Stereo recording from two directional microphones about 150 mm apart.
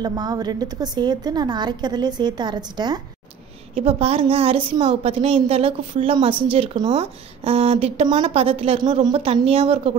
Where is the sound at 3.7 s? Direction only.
40° right (ahead or behind).